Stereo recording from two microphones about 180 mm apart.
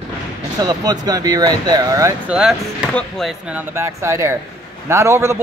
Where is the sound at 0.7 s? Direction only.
20° right (ahead or behind).